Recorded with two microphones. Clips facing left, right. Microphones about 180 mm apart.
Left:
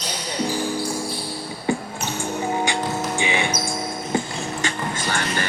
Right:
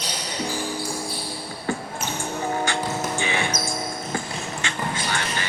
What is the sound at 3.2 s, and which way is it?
Music, 15° left (ahead or behind).